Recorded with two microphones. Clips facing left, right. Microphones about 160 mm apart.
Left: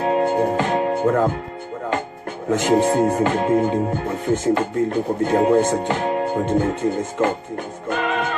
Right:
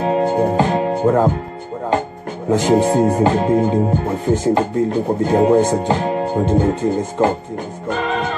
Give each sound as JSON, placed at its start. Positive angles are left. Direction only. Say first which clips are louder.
{"t": 0.0, "sound": "music", "louder": "right 2 dB", "side_deg": -35}
{"t": 2.5, "sound": "speech", "louder": "right 3 dB", "side_deg": -30}